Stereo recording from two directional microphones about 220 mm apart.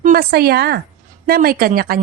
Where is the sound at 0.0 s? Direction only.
40° right (ahead or behind).